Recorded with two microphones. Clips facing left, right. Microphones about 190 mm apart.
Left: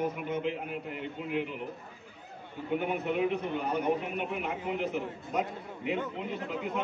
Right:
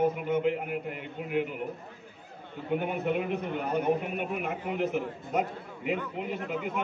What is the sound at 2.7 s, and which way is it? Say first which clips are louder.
A man's voice: right 1 dB; 50° right (ahead or behind).